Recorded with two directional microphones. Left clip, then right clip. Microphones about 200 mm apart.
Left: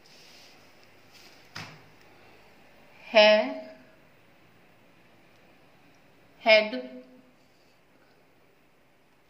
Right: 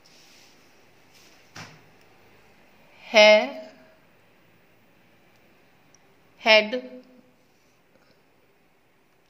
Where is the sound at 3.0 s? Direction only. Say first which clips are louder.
Right 4 dB; 55° right (ahead or behind).